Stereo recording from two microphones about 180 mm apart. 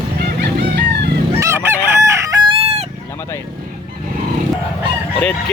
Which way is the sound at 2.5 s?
35° right (ahead or behind).